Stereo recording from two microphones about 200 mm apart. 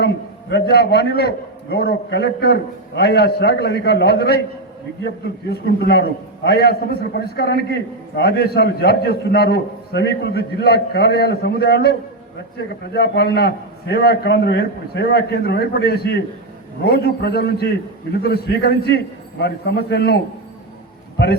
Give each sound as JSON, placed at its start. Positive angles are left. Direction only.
{"t": 0.5, "sound": "a man's voice", "side_deg": 55}
{"t": 5.5, "sound": "a man's voice", "side_deg": 55}